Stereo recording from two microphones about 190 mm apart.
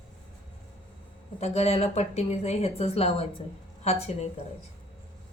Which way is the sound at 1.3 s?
35° left (ahead or behind).